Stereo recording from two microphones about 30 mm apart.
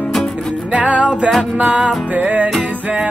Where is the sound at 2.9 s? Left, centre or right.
Right.